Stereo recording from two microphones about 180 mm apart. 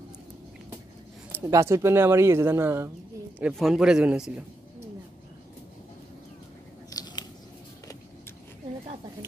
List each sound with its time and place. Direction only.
1.3 s speech: 15° right (ahead or behind)
3.3 s a man's voice: 5° right (ahead or behind)
6.9 s biting: 20° left (ahead or behind)